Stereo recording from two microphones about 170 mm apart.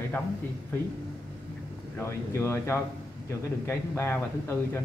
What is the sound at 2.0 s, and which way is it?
Speech, 15° left (ahead or behind).